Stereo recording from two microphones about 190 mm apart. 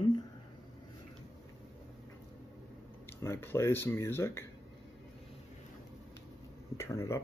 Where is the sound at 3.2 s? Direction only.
10° left (ahead or behind).